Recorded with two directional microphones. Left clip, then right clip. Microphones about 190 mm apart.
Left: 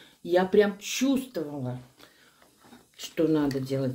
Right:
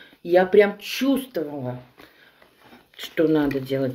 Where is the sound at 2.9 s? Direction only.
10° left (ahead or behind).